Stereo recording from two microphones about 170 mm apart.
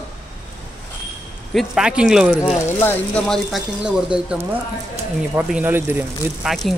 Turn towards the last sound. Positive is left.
turn(degrees=-10)  # may be behind; listen again after turning